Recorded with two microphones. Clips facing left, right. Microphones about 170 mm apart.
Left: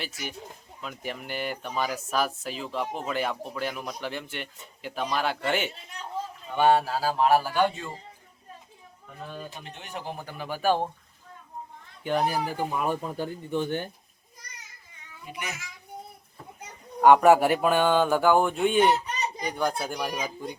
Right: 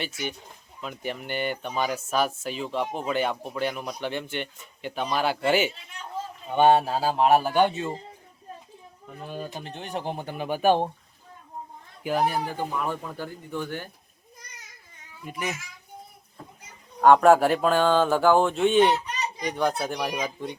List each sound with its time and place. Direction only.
0.0 s speech: centre (ahead or behind)
6.5 s speech: 20° right (ahead or behind)
9.4 s speech: 35° right (ahead or behind)
12.0 s speech: centre (ahead or behind)
12.8 s speech: 20° left (ahead or behind)
15.3 s a child's voice: 55° right (ahead or behind)
17.0 s speech: 10° left (ahead or behind)